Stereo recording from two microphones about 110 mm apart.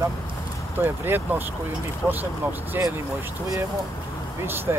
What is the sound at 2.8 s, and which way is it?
Speech, 20° right (ahead or behind).